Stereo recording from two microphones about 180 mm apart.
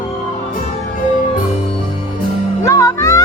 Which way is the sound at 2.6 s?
20° left (ahead or behind).